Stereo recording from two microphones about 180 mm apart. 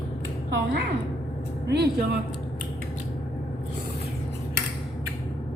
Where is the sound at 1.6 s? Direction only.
65° right (ahead or behind).